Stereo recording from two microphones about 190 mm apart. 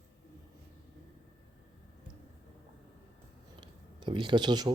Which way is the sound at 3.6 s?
25° right (ahead or behind).